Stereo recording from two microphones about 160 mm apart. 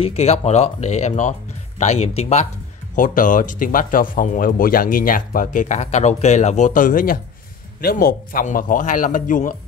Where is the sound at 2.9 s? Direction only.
55° left (ahead or behind).